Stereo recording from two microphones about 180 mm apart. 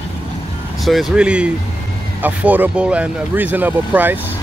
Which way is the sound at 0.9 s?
Centre (ahead or behind).